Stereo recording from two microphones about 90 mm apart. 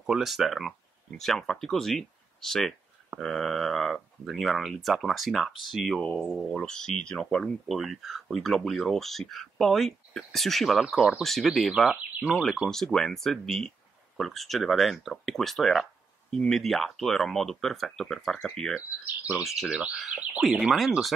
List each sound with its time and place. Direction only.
0.0 s speech: centre (ahead or behind)
12.6 s speech: 5° left (ahead or behind)
19.0 s speech: 20° right (ahead or behind)
19.4 s speech: centre (ahead or behind)